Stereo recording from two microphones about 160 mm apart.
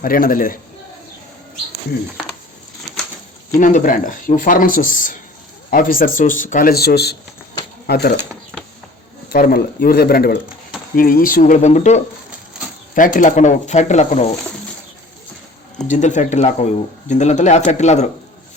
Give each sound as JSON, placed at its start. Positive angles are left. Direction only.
{"t": 0.0, "sound": "speech", "side_deg": 60}
{"t": 3.6, "sound": "speech", "side_deg": 55}
{"t": 9.3, "sound": "speech", "side_deg": 65}
{"t": 13.1, "sound": "speech", "side_deg": 50}
{"t": 15.9, "sound": "speech", "side_deg": 50}